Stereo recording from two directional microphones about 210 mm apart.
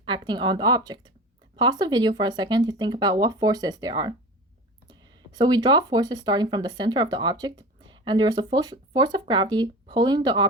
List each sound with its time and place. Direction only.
0.0 s speech: 20° right (ahead or behind)